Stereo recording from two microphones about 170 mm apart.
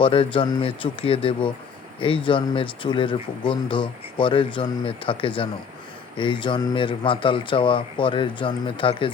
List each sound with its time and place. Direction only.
0.0 s speech: 30° left (ahead or behind)